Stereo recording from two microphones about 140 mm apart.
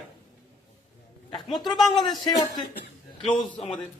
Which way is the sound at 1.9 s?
30° left (ahead or behind).